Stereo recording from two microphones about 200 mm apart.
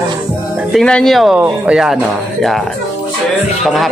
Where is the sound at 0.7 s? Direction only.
5° left (ahead or behind).